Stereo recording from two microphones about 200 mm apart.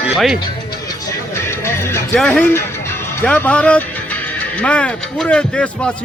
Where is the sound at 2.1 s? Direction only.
5° left (ahead or behind).